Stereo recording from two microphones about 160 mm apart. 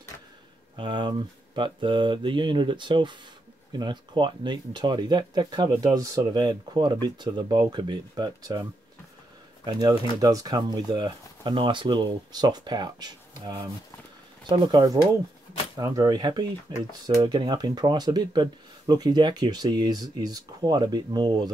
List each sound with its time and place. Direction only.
0.7 s speech: 30° right (ahead or behind)
9.7 s speech: 25° right (ahead or behind)